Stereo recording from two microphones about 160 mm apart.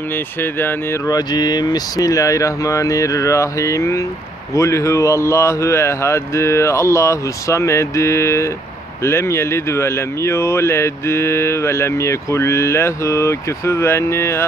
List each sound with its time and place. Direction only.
0.1 s speech: 15° left (ahead or behind)